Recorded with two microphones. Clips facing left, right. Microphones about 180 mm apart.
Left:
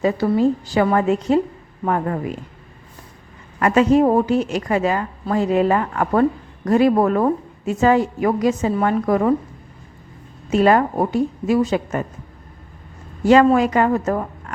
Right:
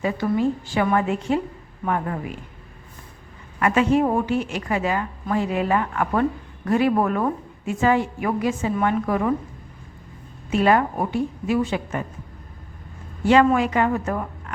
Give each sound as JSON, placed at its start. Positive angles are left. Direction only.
{"t": 0.0, "sound": "a woman's voice", "side_deg": 35}
{"t": 3.6, "sound": "a woman's voice", "side_deg": 40}
{"t": 10.5, "sound": "a woman's voice", "side_deg": 40}
{"t": 13.2, "sound": "a woman's voice", "side_deg": 40}